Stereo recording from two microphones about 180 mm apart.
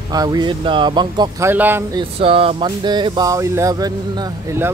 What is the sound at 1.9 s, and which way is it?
Speech, 30° right (ahead or behind).